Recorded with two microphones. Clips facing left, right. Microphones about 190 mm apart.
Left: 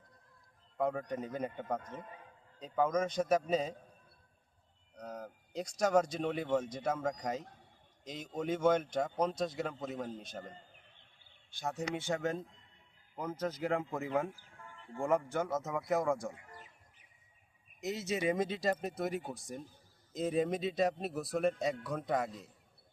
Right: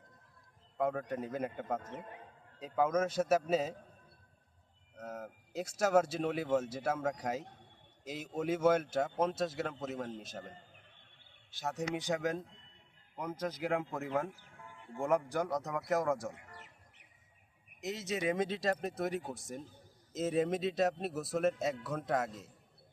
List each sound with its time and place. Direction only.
0.8 s speech: centre (ahead or behind)
1.9 s a man's voice: 70° right (ahead or behind)
2.6 s speech: 5° right (ahead or behind)
4.9 s speech: 5° right (ahead or behind)
11.9 s speech: 15° right (ahead or behind)
13.2 s speech: 10° right (ahead or behind)
16.6 s bird: 70° right (ahead or behind)
17.7 s speech: centre (ahead or behind)